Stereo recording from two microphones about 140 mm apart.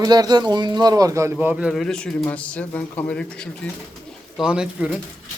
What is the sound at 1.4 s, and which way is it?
A man's voice, 5° right (ahead or behind).